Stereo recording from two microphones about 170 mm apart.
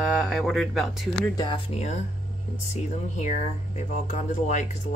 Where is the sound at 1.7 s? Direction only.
35° left (ahead or behind).